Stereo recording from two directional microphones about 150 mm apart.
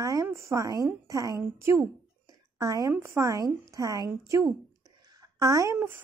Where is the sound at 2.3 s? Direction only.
25° right (ahead or behind).